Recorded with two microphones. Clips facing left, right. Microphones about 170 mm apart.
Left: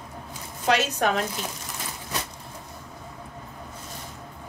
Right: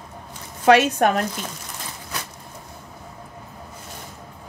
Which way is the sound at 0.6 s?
55° right (ahead or behind).